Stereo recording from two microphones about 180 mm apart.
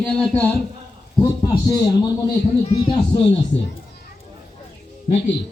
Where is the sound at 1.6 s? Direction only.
20° left (ahead or behind).